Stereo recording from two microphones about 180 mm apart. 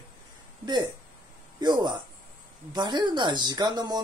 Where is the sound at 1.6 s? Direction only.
25° right (ahead or behind).